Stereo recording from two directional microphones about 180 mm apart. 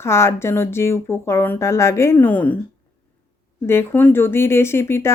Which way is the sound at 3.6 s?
15° left (ahead or behind).